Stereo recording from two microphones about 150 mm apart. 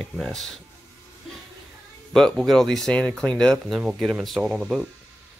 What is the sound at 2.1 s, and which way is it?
Speech, centre (ahead or behind).